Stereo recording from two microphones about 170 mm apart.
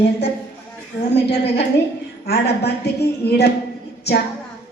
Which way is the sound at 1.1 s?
75° left (ahead or behind).